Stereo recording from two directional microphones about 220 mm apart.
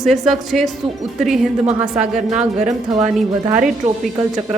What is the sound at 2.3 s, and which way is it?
Speech, 30° right (ahead or behind).